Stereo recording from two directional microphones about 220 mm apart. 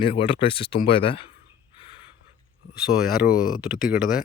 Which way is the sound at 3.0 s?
5° right (ahead or behind).